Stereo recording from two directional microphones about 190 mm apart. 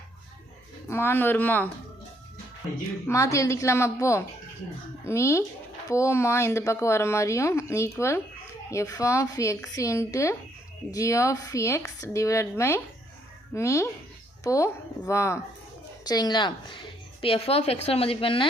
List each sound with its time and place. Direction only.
0.9 s speech: 15° left (ahead or behind)
3.1 s a woman's voice: 15° left (ahead or behind)